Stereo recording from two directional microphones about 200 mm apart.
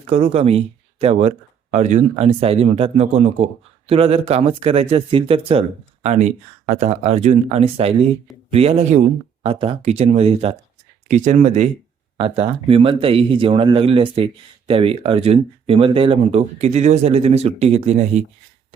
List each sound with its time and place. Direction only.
0.1 s a man's voice: 30° right (ahead or behind)